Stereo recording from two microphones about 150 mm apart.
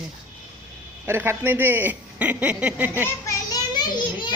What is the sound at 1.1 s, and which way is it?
Speech, 15° right (ahead or behind).